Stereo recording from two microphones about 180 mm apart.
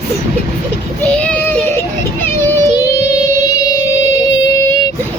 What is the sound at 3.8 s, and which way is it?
Child singing, 15° left (ahead or behind).